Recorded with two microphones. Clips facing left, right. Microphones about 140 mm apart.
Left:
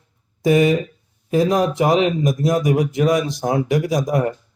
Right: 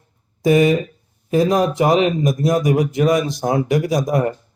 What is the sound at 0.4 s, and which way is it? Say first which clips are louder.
A man's voice: right 1 dB; 50° right (ahead or behind).